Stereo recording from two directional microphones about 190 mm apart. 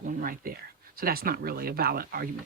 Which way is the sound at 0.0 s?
45° right (ahead or behind).